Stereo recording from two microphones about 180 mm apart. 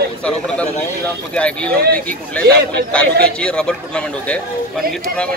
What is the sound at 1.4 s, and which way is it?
Speech, 5° left (ahead or behind).